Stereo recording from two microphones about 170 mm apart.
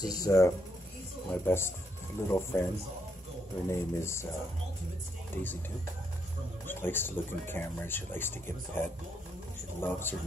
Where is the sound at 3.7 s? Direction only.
15° left (ahead or behind).